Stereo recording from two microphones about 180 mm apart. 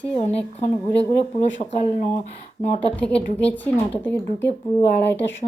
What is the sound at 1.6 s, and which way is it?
Speech, 35° left (ahead or behind).